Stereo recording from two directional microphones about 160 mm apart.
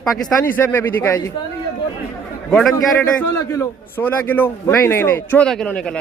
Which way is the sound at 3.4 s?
20° left (ahead or behind).